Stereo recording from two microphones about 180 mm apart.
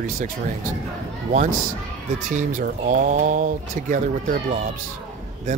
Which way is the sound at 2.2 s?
45° right (ahead or behind).